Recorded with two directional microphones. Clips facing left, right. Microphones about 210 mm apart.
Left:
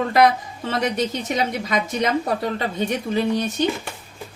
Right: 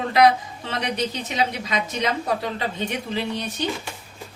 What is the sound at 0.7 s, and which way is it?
Speech, 45° left (ahead or behind).